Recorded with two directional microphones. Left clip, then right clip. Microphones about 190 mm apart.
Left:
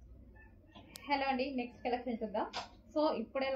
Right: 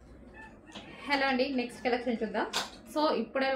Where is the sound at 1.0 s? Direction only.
20° right (ahead or behind).